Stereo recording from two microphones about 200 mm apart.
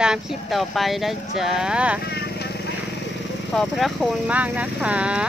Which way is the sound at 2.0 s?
55° left (ahead or behind).